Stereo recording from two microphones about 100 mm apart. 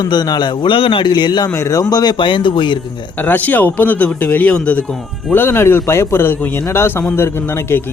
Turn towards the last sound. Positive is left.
turn(degrees=25)  # may be behind; listen again after turning